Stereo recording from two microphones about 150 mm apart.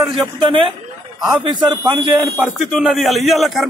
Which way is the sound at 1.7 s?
25° right (ahead or behind).